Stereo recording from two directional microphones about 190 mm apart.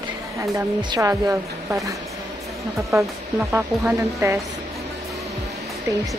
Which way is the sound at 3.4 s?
Centre (ahead or behind).